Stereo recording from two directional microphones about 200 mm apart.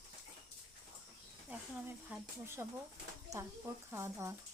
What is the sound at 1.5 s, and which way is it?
Speech, 10° right (ahead or behind).